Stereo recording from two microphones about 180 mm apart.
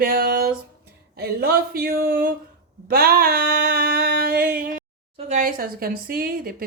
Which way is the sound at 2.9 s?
55° right (ahead or behind).